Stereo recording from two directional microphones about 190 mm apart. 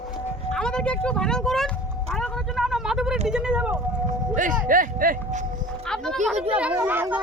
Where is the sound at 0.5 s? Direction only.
5° left (ahead or behind).